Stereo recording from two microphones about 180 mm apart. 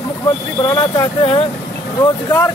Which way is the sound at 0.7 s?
20° left (ahead or behind).